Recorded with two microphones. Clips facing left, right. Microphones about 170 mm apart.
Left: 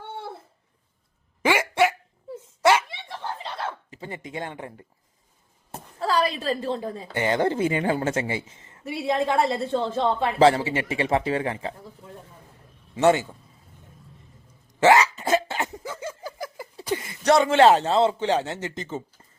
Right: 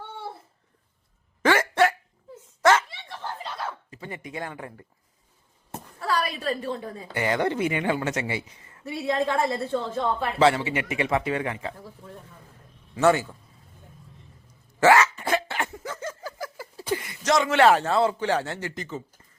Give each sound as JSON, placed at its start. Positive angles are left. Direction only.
{"t": 1.4, "sound": "a sound", "side_deg": 10}
{"t": 3.4, "sound": "chuckle", "side_deg": 25}
{"t": 6.0, "sound": "a woman's voice", "side_deg": 30}
{"t": 13.0, "sound": "a woman's voice", "side_deg": 20}
{"t": 14.8, "sound": "cough", "side_deg": 20}
{"t": 15.9, "sound": "a sound", "side_deg": 10}
{"t": 16.9, "sound": "speech", "side_deg": 25}